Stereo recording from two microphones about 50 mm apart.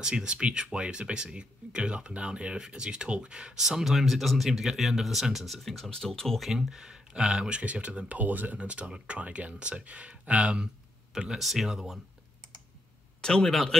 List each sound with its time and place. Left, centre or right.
0.0 s speech: centre
6.5 s speech: centre
11.1 s speech: centre
13.2 s speech: centre